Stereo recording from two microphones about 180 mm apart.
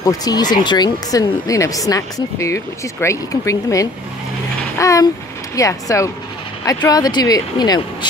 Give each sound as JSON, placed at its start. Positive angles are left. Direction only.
{"t": 0.0, "sound": "speech", "side_deg": 20}
{"t": 4.7, "sound": "a sound", "side_deg": 15}
{"t": 5.6, "sound": "speech", "side_deg": 15}